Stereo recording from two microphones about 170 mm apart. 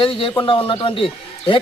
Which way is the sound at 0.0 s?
30° left (ahead or behind).